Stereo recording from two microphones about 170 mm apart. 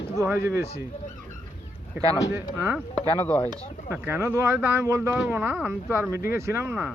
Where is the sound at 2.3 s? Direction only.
15° right (ahead or behind).